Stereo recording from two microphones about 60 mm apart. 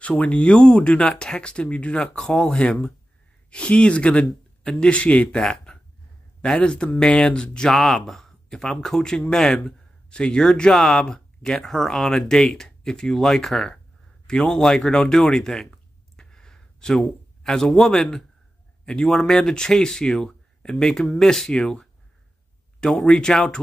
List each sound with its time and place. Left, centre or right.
0.0 s speech: left
7.7 s speech: centre